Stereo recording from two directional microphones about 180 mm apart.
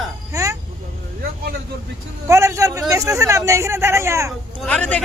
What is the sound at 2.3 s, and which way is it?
A man's voice, 15° right (ahead or behind).